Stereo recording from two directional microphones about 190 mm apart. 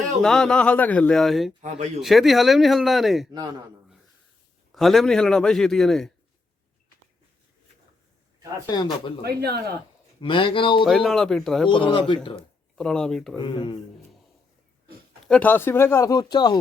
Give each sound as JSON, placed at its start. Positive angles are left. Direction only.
{"t": 0.2, "sound": "a man's voice", "side_deg": 5}
{"t": 4.7, "sound": "a man's voice", "side_deg": 0}
{"t": 8.6, "sound": "speech", "side_deg": 25}
{"t": 9.2, "sound": "speech", "side_deg": -55}
{"t": 10.2, "sound": "speech", "side_deg": 25}
{"t": 10.8, "sound": "a man's voice", "side_deg": 0}
{"t": 11.7, "sound": "speech", "side_deg": 25}
{"t": 12.7, "sound": "a man's voice", "side_deg": 5}
{"t": 13.3, "sound": "speech", "side_deg": 25}
{"t": 15.3, "sound": "speech", "side_deg": 10}